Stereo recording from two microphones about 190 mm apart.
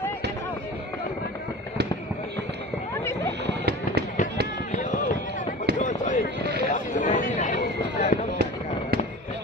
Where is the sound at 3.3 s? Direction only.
65° right (ahead or behind).